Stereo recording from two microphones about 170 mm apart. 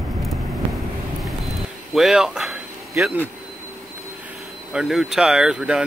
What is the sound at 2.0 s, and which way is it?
Speech, centre (ahead or behind).